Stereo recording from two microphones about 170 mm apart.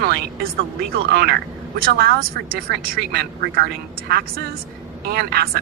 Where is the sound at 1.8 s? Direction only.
65° right (ahead or behind).